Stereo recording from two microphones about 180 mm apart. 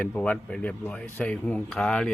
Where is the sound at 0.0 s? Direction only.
10° left (ahead or behind).